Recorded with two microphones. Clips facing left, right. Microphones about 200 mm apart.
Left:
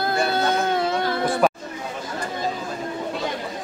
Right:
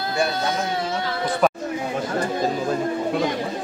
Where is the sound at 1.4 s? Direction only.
5° left (ahead or behind).